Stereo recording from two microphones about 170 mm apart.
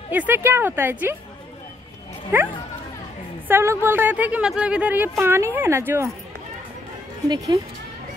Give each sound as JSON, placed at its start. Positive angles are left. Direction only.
{"t": 0.1, "sound": "speech", "side_deg": -10}
{"t": 2.3, "sound": "speech", "side_deg": -15}
{"t": 7.2, "sound": "speech", "side_deg": -20}